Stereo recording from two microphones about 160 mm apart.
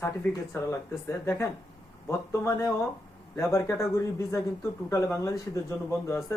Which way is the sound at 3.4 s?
20° left (ahead or behind).